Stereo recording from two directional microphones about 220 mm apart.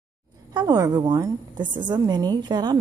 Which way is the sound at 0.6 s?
15° right (ahead or behind).